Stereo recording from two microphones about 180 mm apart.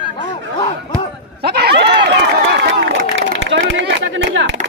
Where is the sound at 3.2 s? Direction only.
80° right.